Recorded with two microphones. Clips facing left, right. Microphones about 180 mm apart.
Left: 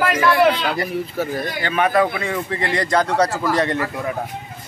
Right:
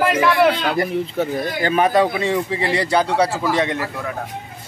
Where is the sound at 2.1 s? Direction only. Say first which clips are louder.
Right 4 dB; 25° right (ahead or behind).